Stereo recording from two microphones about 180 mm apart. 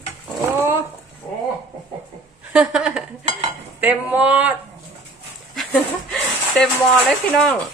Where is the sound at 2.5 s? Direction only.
5° right (ahead or behind).